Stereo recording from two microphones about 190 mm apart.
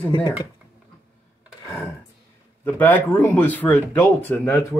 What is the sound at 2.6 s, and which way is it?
Speech, 10° left (ahead or behind).